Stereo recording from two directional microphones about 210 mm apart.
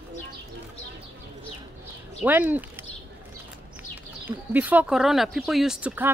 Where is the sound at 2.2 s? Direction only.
10° right (ahead or behind).